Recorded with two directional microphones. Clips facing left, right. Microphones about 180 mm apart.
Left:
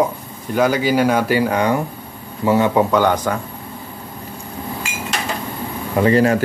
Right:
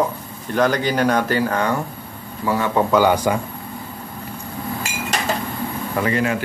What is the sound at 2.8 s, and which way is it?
Speech, centre (ahead or behind).